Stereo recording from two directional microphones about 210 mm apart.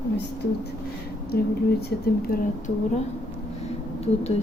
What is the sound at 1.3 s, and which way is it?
Speech, 45° left (ahead or behind).